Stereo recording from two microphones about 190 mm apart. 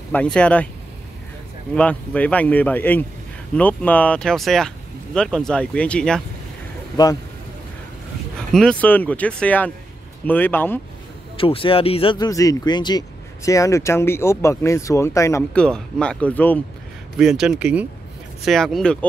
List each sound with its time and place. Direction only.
0.1 s speech: 5° left (ahead or behind)
1.8 s speech: 5° left (ahead or behind)
8.5 s speech: 5° left (ahead or behind)
11.3 s speech: 30° left (ahead or behind)
15.5 s speech: 5° left (ahead or behind)
17.2 s speech: 5° right (ahead or behind)